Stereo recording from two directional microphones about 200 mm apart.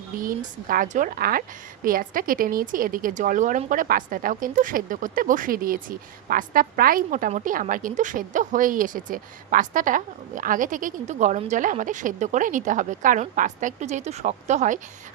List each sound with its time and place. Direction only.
0.2 s a woman's voice: 45° right (ahead or behind)